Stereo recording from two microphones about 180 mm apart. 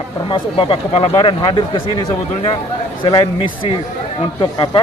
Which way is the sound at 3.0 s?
25° left (ahead or behind).